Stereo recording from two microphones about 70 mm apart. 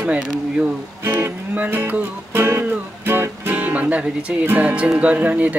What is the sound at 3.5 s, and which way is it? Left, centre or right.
Speech, right.